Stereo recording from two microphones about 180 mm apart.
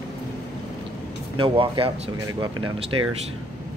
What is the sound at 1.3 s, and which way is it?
Speech, 30° right (ahead or behind).